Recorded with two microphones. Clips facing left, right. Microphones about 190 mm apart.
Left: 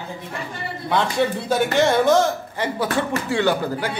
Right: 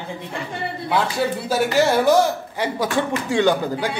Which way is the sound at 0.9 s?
5° right (ahead or behind).